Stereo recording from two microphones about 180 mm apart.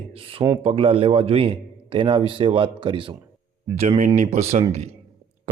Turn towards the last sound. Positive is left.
turn(degrees=-35)  # may be behind; listen again after turning